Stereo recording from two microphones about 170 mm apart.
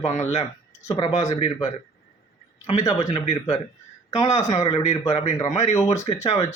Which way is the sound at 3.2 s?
40° left (ahead or behind).